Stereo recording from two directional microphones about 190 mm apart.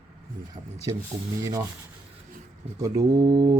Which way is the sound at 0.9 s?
20° right (ahead or behind).